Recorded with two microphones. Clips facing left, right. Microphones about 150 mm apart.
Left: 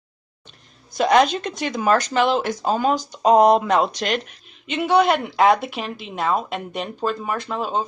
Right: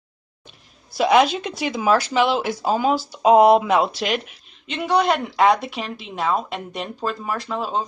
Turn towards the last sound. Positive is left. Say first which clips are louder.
# left 1 dB
turn(degrees=0)  # may be behind; listen again after turning